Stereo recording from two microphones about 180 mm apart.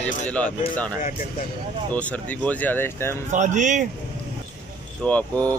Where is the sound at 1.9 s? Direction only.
10° left (ahead or behind).